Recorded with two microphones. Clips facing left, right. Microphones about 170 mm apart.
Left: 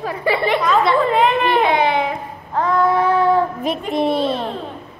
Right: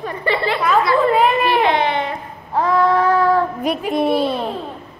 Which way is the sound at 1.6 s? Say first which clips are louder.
Left 1 dB; 10° left (ahead or behind).